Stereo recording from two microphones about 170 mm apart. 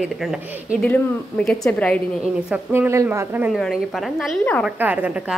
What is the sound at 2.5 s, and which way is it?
A woman's voice, 15° right (ahead or behind).